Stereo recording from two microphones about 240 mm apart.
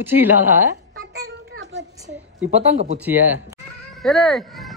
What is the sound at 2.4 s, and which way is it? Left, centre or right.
Speech, right.